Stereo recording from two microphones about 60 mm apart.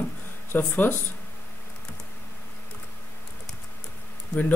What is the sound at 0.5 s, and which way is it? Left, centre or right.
Speech, left.